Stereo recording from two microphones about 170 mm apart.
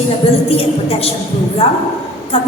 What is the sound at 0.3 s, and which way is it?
A woman's voice, 35° left (ahead or behind).